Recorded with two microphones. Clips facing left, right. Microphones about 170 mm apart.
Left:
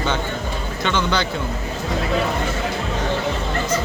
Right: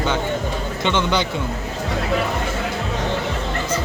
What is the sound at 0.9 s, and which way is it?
Speech, 20° right (ahead or behind).